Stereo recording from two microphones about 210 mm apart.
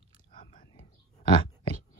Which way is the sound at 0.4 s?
40° left (ahead or behind).